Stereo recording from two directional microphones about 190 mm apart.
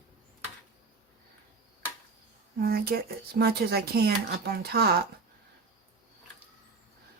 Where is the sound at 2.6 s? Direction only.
55° right (ahead or behind).